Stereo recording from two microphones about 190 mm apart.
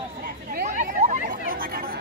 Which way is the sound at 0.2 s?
50° right (ahead or behind).